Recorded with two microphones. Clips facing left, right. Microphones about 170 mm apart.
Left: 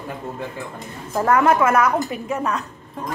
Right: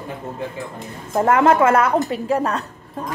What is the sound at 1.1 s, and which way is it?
A woman's voice, 25° right (ahead or behind).